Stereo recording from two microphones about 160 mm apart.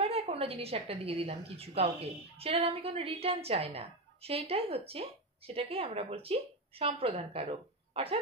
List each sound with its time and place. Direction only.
0.0 s a woman's voice: 40° right (ahead or behind)